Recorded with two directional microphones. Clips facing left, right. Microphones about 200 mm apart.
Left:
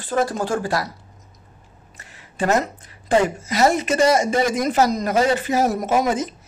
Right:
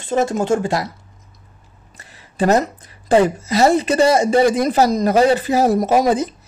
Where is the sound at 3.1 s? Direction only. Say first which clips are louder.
Right 4 dB; 35° right (ahead or behind).